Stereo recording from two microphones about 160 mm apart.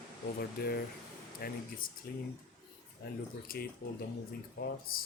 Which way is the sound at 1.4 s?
65° left (ahead or behind).